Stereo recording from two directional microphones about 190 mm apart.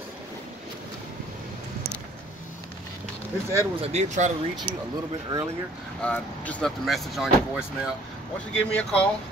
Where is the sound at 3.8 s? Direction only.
35° right (ahead or behind).